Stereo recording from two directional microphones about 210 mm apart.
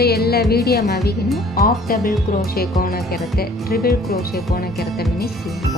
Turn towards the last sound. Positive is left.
turn(degrees=50)  # may be behind; listen again after turning